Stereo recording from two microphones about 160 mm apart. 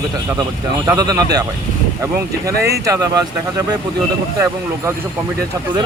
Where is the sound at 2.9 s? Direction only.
20° right (ahead or behind).